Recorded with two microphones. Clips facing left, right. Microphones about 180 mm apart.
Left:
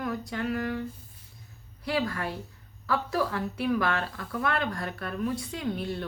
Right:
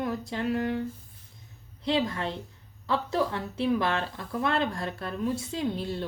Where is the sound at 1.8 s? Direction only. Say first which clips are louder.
Right 2 dB; 25° right (ahead or behind).